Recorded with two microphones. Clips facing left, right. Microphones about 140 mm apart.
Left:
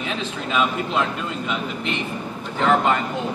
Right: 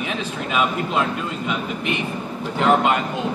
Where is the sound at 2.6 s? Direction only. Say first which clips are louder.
Right 1 dB; 15° right (ahead or behind).